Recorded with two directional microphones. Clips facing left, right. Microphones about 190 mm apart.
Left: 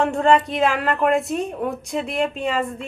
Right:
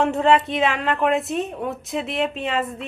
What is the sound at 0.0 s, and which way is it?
A woman's voice, centre (ahead or behind).